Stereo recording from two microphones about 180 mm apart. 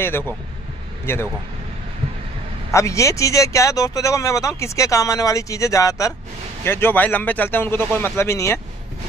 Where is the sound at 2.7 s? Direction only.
15° left (ahead or behind).